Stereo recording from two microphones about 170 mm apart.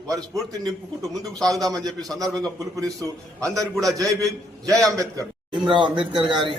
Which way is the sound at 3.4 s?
20° right (ahead or behind).